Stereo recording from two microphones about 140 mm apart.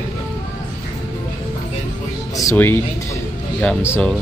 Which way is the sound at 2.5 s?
15° left (ahead or behind).